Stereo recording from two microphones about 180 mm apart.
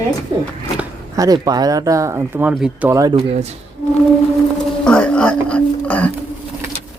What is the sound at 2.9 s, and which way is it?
Speech, 20° right (ahead or behind).